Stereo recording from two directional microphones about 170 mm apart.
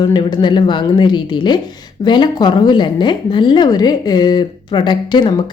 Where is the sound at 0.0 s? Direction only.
25° left (ahead or behind).